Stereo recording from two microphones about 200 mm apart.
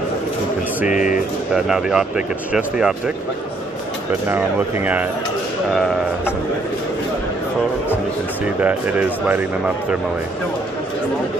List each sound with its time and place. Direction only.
0.9 s speech: 40° left (ahead or behind)
1.5 s speech: 5° right (ahead or behind)
4.3 s speech: 10° right (ahead or behind)
8.5 s speech: 10° right (ahead or behind)